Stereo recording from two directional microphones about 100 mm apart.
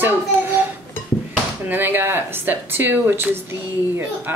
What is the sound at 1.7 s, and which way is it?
A woman's voice, 20° right (ahead or behind).